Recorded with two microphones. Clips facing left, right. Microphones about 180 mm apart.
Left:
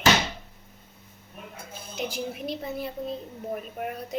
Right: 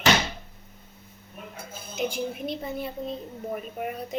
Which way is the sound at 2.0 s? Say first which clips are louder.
Right 3 dB; 50° right (ahead or behind).